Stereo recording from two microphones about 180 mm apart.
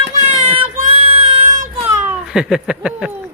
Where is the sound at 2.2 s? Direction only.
5° right (ahead or behind).